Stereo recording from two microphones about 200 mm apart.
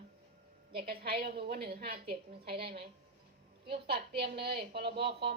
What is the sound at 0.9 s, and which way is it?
A woman's voice, 50° right (ahead or behind).